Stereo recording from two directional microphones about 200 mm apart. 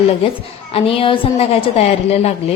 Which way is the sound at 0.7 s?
25° left (ahead or behind).